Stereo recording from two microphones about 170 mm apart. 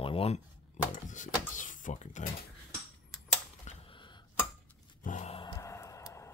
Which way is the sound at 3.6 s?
30° left (ahead or behind).